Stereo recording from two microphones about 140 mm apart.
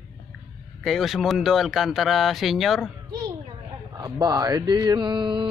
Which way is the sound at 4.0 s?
30° right (ahead or behind).